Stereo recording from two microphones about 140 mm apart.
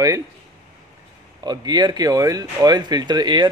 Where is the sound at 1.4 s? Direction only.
30° right (ahead or behind).